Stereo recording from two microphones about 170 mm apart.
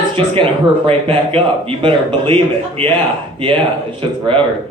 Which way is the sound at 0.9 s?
35° right (ahead or behind).